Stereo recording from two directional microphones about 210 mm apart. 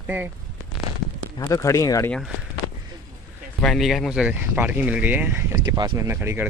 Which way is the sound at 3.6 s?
Centre (ahead or behind).